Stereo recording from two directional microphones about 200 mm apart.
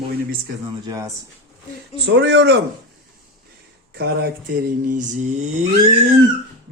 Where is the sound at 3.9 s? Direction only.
55° right (ahead or behind).